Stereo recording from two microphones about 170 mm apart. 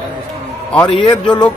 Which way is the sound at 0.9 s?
25° left (ahead or behind).